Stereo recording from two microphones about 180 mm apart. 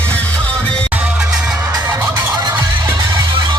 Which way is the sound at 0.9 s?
5° right (ahead or behind).